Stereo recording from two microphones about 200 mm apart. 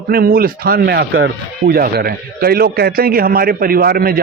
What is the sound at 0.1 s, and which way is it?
A man's voice, 50° right (ahead or behind).